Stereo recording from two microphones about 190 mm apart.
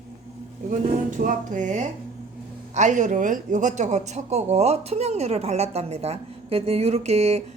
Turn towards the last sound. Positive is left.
turn(degrees=-35)  # may be behind; listen again after turning